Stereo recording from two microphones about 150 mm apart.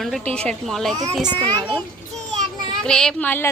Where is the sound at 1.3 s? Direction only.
30° right (ahead or behind).